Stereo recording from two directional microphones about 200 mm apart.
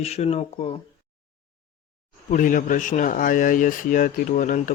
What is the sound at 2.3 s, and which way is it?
Speech, 40° left (ahead or behind).